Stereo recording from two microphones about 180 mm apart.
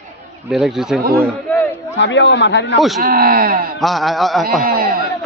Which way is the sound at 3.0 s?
55° right (ahead or behind).